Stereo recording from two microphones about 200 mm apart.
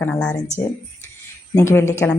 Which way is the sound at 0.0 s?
5° left (ahead or behind).